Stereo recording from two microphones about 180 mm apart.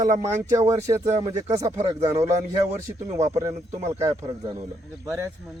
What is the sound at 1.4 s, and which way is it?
Speech, 35° right (ahead or behind).